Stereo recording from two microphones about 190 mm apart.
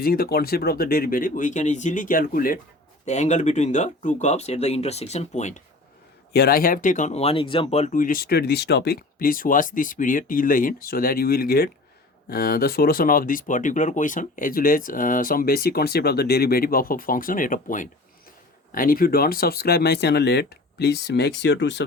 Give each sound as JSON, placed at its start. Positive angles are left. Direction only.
{"t": 0.0, "sound": "speech", "side_deg": 55}
{"t": 6.3, "sound": "speech", "side_deg": 55}